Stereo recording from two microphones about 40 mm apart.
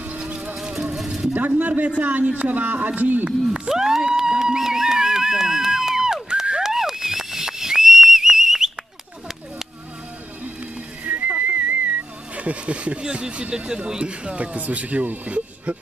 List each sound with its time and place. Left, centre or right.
0.6 s music: centre
0.9 s a sound: centre
1.6 s speech: right
3.3 s speech: right
3.6 s a sound: centre
6.6 s whistle: centre
11.1 s whistling: right
12.4 s a sound: right
13.0 s speech: right